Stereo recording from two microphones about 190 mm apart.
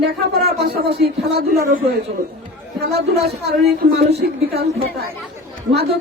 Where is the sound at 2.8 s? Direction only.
55° right (ahead or behind).